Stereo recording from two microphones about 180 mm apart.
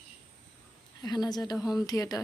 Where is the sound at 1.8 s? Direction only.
20° left (ahead or behind).